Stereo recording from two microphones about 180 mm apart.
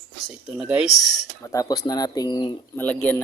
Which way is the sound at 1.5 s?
20° left (ahead or behind).